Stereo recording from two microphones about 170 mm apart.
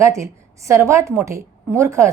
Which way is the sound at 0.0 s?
15° right (ahead or behind).